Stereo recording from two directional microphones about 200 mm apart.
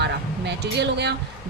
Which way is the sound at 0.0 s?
55° right (ahead or behind).